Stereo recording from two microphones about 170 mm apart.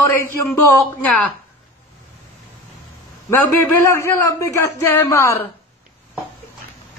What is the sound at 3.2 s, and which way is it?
A man's voice, 15° left (ahead or behind).